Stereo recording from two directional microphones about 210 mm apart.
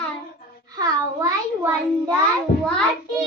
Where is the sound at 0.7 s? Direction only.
15° right (ahead or behind).